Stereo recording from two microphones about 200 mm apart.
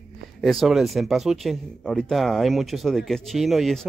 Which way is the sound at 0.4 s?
Centre (ahead or behind).